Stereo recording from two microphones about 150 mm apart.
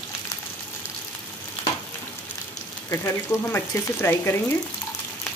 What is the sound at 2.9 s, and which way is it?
Speech, 15° left (ahead or behind).